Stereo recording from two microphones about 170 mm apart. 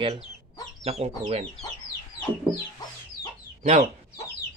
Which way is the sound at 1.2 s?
45° right (ahead or behind).